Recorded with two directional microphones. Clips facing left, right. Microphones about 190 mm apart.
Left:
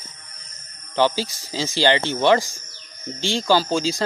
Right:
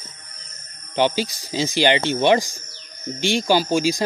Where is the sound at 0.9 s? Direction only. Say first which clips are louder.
Even; 20° right (ahead or behind).